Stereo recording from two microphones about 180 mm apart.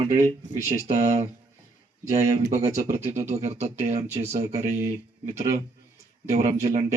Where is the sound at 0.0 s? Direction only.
45° right (ahead or behind).